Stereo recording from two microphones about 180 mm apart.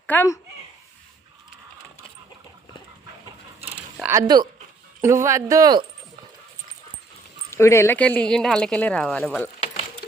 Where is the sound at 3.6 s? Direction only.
10° right (ahead or behind).